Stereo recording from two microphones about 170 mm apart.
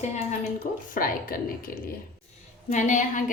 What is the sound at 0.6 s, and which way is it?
A woman's voice, 55° left (ahead or behind).